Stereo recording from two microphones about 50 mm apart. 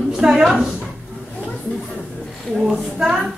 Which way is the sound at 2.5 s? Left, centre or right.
Centre.